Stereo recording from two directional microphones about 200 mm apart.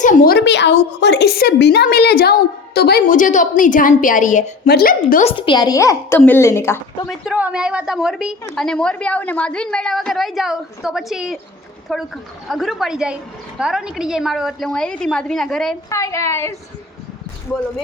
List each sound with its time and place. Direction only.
0.0 s a woman's voice: 45° left (ahead or behind)
5.3 s a woman's voice: 25° left (ahead or behind)
7.1 s a woman's voice: 5° right (ahead or behind)
15.9 s a woman's voice: 15° left (ahead or behind)